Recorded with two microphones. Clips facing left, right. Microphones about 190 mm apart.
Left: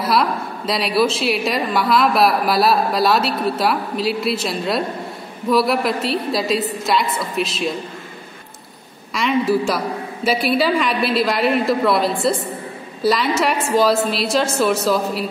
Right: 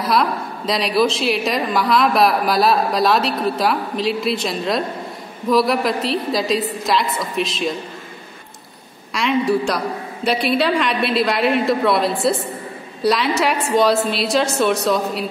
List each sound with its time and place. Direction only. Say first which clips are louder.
0.0 s a woman's voice: even; centre (ahead or behind)
9.1 s a woman's voice: even; centre (ahead or behind)